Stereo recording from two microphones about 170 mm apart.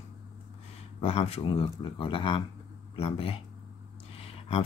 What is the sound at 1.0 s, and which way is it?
Speech, 35° left (ahead or behind).